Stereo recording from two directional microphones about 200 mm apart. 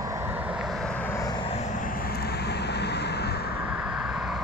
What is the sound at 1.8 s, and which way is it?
Vehicle, 50° left (ahead or behind).